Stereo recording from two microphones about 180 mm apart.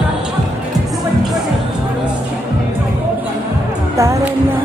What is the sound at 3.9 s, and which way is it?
Music, 15° right (ahead or behind).